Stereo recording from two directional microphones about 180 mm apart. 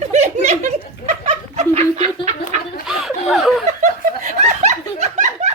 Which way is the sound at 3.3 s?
Centre (ahead or behind).